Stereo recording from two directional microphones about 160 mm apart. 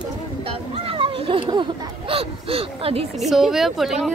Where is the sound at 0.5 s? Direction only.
35° right (ahead or behind).